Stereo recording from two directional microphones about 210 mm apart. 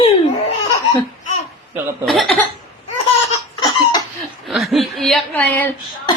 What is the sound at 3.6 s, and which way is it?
Cough, 15° left (ahead or behind).